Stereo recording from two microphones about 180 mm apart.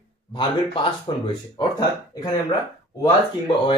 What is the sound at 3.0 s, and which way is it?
Speech, 25° left (ahead or behind).